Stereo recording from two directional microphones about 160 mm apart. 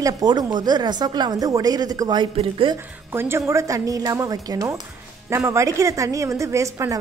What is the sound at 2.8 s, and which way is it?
A woman's voice, 15° right (ahead or behind).